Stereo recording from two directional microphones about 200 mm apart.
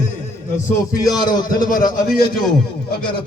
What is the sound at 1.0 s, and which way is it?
Speech, 20° left (ahead or behind).